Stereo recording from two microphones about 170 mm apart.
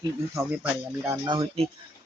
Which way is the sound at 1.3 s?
30° right (ahead or behind).